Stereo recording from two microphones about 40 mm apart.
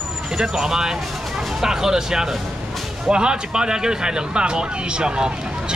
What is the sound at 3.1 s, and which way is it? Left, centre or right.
Speech, right.